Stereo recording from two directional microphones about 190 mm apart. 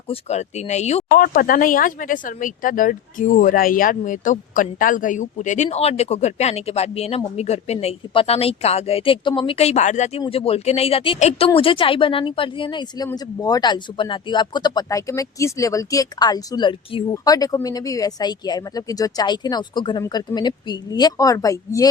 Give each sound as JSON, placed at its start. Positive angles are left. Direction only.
{"t": 0.1, "sound": "speech", "side_deg": 35}